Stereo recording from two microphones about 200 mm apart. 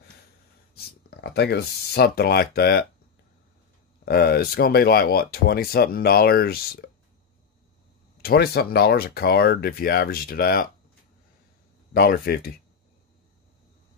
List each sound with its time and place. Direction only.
0.7 s speech: 55° left (ahead or behind)
4.0 s speech: 50° left (ahead or behind)
8.2 s speech: 50° left (ahead or behind)
11.9 s speech: 50° left (ahead or behind)